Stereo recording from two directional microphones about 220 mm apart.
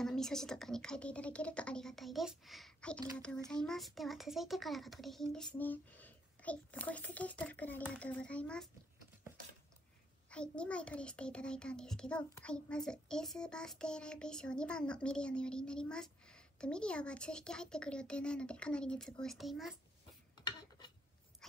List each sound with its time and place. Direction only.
0.0 s a child's voice: centre (ahead or behind)
10.3 s a child's voice: 5° left (ahead or behind)